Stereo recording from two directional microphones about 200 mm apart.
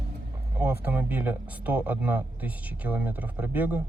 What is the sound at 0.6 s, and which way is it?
Speech, 10° right (ahead or behind).